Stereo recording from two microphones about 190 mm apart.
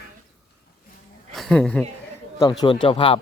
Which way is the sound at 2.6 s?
25° left (ahead or behind).